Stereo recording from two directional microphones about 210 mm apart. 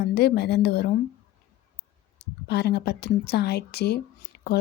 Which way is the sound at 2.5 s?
50° left (ahead or behind).